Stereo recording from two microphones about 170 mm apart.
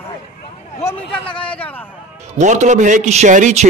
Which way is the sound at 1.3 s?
5° left (ahead or behind).